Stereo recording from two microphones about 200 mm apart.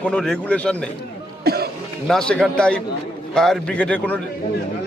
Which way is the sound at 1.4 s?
50° right (ahead or behind).